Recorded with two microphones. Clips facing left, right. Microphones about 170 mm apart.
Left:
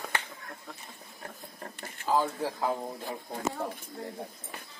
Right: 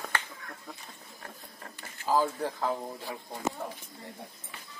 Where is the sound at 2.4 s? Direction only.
5° left (ahead or behind).